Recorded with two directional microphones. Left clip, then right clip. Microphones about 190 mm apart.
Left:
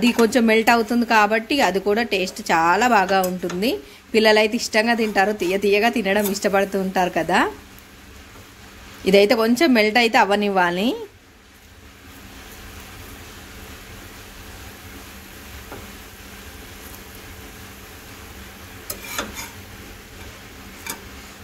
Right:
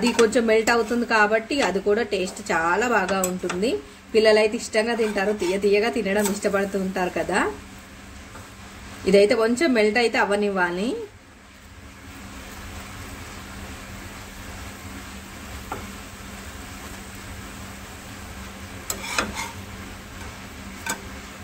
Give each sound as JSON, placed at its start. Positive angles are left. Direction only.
{"t": 0.0, "sound": "a woman's voice", "side_deg": 45}
{"t": 9.0, "sound": "a woman's voice", "side_deg": 45}